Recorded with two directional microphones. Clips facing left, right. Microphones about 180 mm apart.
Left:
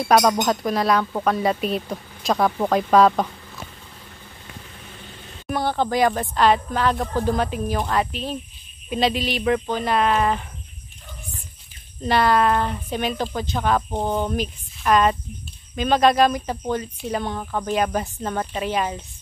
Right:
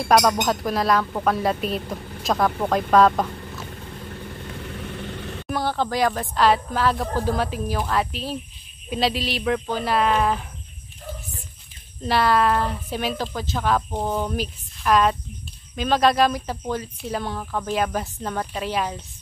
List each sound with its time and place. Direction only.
0.0 s speech: 5° left (ahead or behind)
4.6 s vehicle: 70° right (ahead or behind)
5.5 s speech: centre (ahead or behind)
12.0 s speech: centre (ahead or behind)